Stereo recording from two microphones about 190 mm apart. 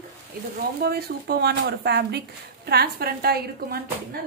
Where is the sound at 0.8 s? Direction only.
55° right (ahead or behind).